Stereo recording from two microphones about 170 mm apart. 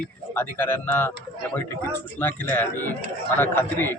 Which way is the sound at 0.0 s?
10° left (ahead or behind).